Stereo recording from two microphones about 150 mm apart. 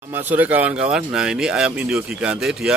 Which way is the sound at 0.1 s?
15° right (ahead or behind).